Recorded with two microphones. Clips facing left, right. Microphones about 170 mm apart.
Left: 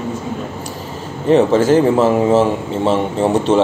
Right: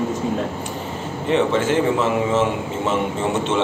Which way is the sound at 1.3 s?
40° left (ahead or behind).